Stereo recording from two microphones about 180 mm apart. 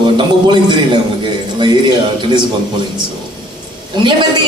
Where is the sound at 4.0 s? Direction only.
25° right (ahead or behind).